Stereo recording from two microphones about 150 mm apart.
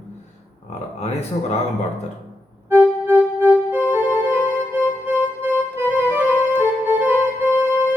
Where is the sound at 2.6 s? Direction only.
10° right (ahead or behind).